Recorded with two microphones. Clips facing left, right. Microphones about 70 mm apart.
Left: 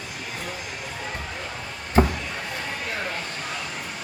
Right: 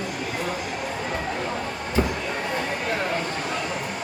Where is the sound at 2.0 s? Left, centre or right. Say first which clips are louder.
Left 4 dB; left.